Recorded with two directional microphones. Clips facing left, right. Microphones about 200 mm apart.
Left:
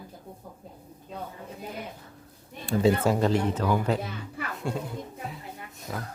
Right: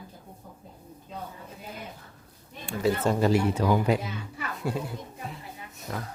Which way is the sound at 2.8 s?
25° left (ahead or behind).